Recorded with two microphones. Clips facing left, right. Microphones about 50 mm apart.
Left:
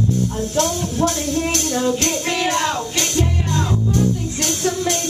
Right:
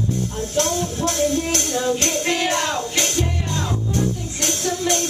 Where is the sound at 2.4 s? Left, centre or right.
Centre.